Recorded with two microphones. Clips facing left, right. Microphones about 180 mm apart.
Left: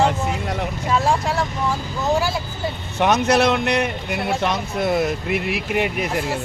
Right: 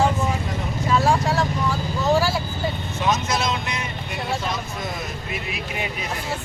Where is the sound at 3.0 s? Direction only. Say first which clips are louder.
Left 7 dB; 65° left (ahead or behind).